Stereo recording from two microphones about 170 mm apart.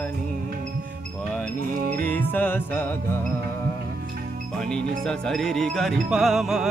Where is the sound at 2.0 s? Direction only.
10° left (ahead or behind).